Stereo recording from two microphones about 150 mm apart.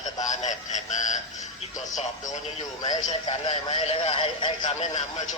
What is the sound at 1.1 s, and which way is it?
Radio, 55° left (ahead or behind).